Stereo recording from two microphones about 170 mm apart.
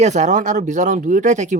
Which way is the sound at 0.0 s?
45° right (ahead or behind).